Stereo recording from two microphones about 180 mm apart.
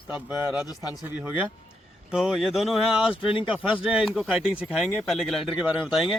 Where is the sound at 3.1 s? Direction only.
30° left (ahead or behind).